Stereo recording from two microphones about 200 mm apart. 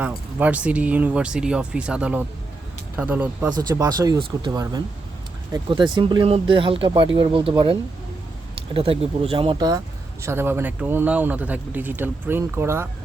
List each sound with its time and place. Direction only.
0.0 s speech: 5° right (ahead or behind)
3.6 s speech: 20° right (ahead or behind)